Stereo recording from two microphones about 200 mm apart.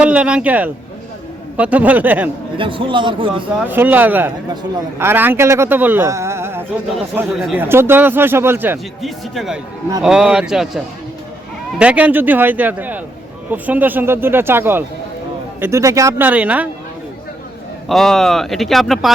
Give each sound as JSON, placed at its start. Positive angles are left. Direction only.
{"t": 0.0, "sound": "a man's voice", "side_deg": -5}
{"t": 2.6, "sound": "a man's voice", "side_deg": -25}
{"t": 3.6, "sound": "a man's voice", "side_deg": -10}
{"t": 17.8, "sound": "speech", "side_deg": 0}